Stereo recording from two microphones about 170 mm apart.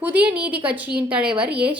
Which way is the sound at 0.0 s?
10° right (ahead or behind).